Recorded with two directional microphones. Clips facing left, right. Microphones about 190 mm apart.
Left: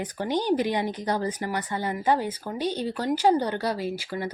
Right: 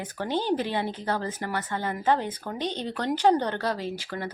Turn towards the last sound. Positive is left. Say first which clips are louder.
# left 3 dB
turn(degrees=10)  # may be behind; listen again after turning